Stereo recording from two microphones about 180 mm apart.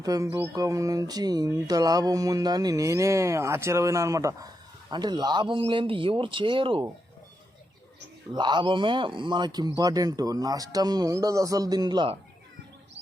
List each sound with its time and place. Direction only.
0.0 s speech: 20° right (ahead or behind)
8.3 s speech: 25° right (ahead or behind)